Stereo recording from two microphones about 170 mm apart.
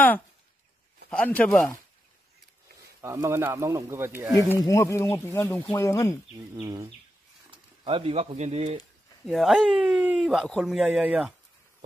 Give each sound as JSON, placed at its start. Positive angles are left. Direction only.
{"t": 1.1, "sound": "speech", "side_deg": 5}
{"t": 3.0, "sound": "speech", "side_deg": -15}
{"t": 4.6, "sound": "speech", "side_deg": 20}
{"t": 6.5, "sound": "bird", "side_deg": -20}
{"t": 7.5, "sound": "speech", "side_deg": -30}
{"t": 9.2, "sound": "speech", "side_deg": 0}